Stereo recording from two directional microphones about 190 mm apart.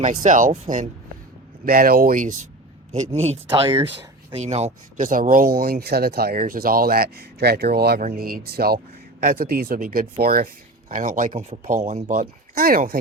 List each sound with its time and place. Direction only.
0.0 s speech: 40° right (ahead or behind)
1.6 s speech: 50° right (ahead or behind)